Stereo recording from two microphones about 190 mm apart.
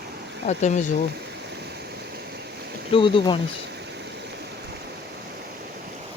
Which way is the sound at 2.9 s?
25° left (ahead or behind).